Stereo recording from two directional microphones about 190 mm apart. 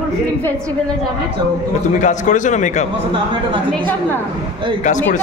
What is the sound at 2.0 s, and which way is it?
Speech, 40° left (ahead or behind).